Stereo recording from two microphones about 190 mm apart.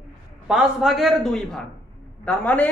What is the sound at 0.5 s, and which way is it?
A man's voice, centre (ahead or behind).